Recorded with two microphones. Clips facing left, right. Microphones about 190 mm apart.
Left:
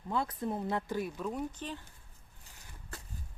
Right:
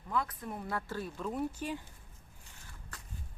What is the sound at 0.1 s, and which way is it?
A woman's voice, 30° left (ahead or behind).